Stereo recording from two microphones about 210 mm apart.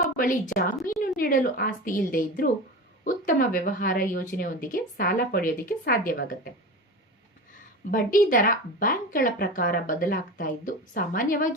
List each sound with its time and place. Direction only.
0.2 s a woman's voice: 40° left (ahead or behind)
7.9 s a woman's voice: 40° left (ahead or behind)